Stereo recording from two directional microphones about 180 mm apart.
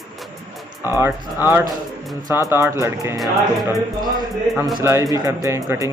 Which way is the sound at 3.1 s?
Centre (ahead or behind).